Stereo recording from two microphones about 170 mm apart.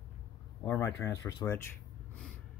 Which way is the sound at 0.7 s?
20° left (ahead or behind).